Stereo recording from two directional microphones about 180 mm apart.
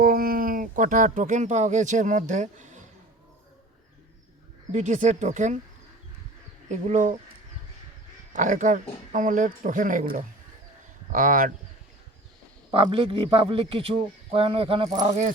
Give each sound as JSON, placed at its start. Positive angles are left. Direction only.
{"t": 0.0, "sound": "speech", "side_deg": -55}
{"t": 4.7, "sound": "speech", "side_deg": -45}
{"t": 6.7, "sound": "speech", "side_deg": -40}
{"t": 8.3, "sound": "speech", "side_deg": -45}
{"t": 12.7, "sound": "speech", "side_deg": -30}